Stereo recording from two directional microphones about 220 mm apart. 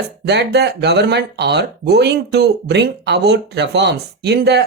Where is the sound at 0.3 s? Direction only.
50° right (ahead or behind).